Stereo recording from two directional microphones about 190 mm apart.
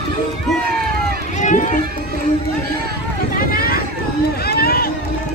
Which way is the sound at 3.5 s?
50° left (ahead or behind).